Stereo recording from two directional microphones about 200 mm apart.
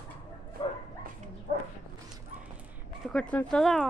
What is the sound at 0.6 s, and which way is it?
Bow-wow, 30° left (ahead or behind).